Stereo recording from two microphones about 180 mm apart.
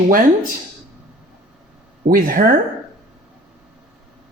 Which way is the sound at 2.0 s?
50° right (ahead or behind).